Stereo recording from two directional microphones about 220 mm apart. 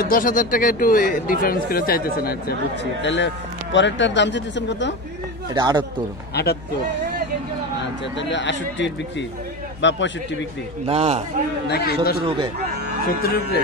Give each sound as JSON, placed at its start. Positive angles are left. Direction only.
{"t": 0.1, "sound": "speech", "side_deg": 40}
{"t": 5.5, "sound": "speech", "side_deg": -20}
{"t": 6.3, "sound": "a man's voice", "side_deg": 45}
{"t": 8.2, "sound": "speech", "side_deg": 55}
{"t": 10.9, "sound": "speech", "side_deg": -30}
{"t": 11.7, "sound": "a man's voice", "side_deg": 45}
{"t": 13.2, "sound": "a man's voice", "side_deg": 45}